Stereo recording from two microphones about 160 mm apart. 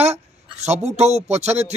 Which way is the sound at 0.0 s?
40° right (ahead or behind).